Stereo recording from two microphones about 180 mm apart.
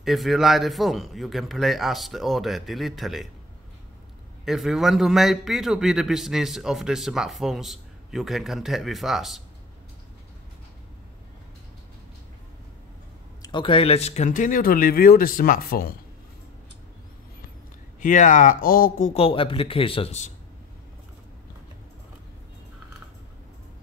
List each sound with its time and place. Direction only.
0.0 s a man's voice: centre (ahead or behind)
4.5 s a man's voice: centre (ahead or behind)
13.4 s speech: 25° left (ahead or behind); by 16.0 s 55° left (ahead or behind)
18.0 s speech: 45° left (ahead or behind)
19.1 s speech: 30° left (ahead or behind)